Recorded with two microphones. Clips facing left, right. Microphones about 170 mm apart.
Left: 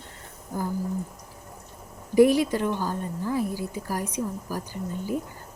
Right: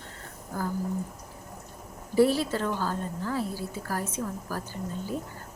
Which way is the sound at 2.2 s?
15° left (ahead or behind).